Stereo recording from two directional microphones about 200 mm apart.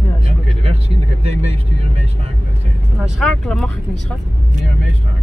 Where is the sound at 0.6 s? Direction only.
30° right (ahead or behind).